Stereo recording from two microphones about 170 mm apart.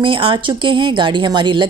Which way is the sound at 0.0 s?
30° right (ahead or behind).